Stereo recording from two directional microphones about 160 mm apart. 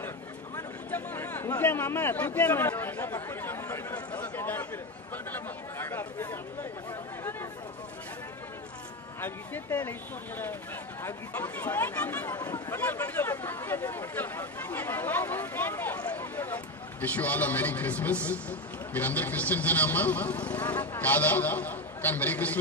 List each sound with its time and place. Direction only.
0.6 s speech: 15° left (ahead or behind)
9.2 s speech: 10° left (ahead or behind)
12.4 s speech: 25° left (ahead or behind)
12.7 s speech: 10° left (ahead or behind)